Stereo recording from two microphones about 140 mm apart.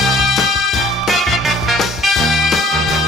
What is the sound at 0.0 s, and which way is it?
Music, centre (ahead or behind).